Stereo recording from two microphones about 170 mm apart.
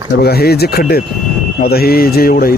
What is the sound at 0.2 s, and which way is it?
Speech, 65° left (ahead or behind).